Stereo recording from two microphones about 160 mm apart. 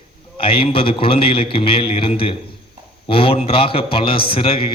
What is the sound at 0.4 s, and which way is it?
A man's voice, 35° left (ahead or behind).